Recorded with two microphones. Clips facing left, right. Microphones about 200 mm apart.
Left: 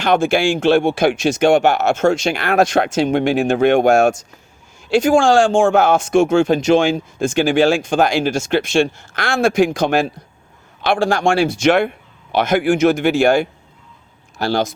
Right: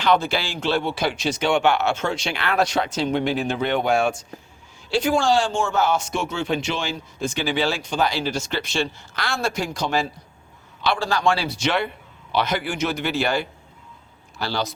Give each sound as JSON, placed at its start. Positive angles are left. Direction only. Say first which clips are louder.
{"t": 0.0, "sound": "speech", "louder": "left 6 dB", "side_deg": 50}